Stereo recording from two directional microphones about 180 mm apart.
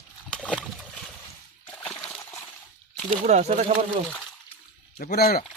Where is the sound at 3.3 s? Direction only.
40° right (ahead or behind).